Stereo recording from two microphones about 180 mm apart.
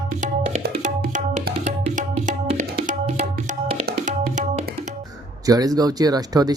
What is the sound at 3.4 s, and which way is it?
Music, 40° right (ahead or behind).